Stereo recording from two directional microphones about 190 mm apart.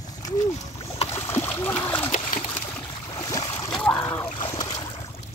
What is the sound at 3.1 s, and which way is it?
Boat, 20° left (ahead or behind).